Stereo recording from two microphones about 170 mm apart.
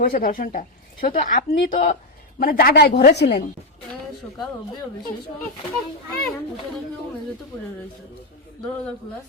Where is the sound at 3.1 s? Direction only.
85° left.